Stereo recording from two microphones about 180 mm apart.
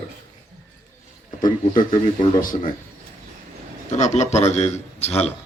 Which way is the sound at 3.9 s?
40° left (ahead or behind).